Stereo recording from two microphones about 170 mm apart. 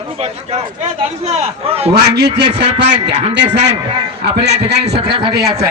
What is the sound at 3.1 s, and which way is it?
Speech, 40° right (ahead or behind).